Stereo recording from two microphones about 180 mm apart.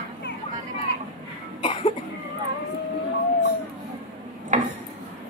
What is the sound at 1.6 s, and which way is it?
Cough, 30° left (ahead or behind).